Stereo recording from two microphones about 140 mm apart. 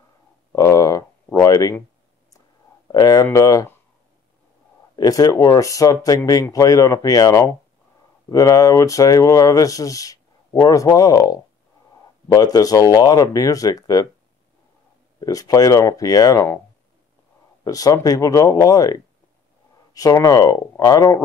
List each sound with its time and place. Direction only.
0.6 s a sound: 25° left (ahead or behind)
2.9 s speech: 25° left (ahead or behind)
4.9 s speech: 25° left (ahead or behind)
15.1 s speech: 25° left (ahead or behind)
17.6 s speech: 25° left (ahead or behind)